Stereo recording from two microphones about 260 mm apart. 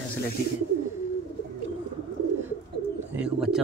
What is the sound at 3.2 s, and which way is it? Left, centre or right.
Bird, centre.